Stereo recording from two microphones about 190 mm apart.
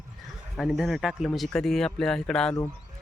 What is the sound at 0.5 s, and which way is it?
Speech, centre (ahead or behind).